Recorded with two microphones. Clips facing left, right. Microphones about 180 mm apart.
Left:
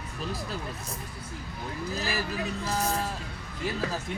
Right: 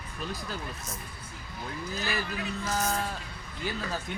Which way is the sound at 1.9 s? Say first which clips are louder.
Left 2 dB; 30° left (ahead or behind).